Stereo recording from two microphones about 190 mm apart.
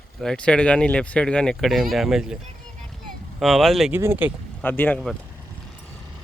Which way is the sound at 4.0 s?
10° right (ahead or behind).